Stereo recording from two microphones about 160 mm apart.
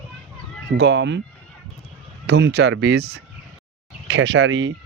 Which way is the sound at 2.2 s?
90° right.